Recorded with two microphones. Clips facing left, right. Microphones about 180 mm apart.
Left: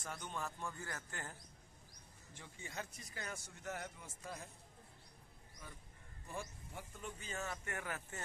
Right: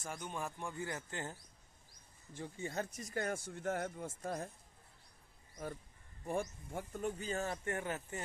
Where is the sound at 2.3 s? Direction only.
35° right (ahead or behind); by 4.5 s 55° right (ahead or behind).